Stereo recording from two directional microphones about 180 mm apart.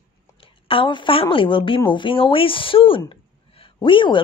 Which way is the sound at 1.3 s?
30° left (ahead or behind).